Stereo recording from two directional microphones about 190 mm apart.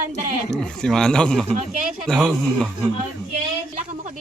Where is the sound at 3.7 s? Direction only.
40° right (ahead or behind).